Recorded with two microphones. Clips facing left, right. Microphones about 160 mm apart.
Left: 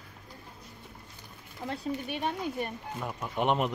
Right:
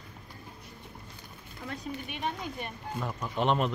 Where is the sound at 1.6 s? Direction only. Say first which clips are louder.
Left 4 dB; 30° left (ahead or behind).